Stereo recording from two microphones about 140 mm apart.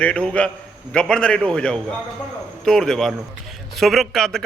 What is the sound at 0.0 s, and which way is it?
A man's voice, 10° left (ahead or behind).